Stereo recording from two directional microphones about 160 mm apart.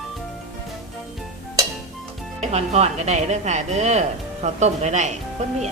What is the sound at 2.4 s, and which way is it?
Speech, 45° right (ahead or behind).